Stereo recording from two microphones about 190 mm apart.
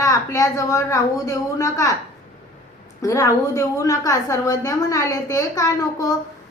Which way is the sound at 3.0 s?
15° left (ahead or behind).